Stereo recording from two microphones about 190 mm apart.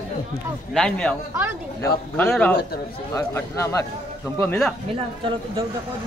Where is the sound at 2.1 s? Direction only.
10° left (ahead or behind).